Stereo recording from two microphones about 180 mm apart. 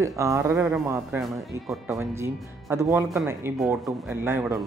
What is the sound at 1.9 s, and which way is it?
Speech, 15° right (ahead or behind).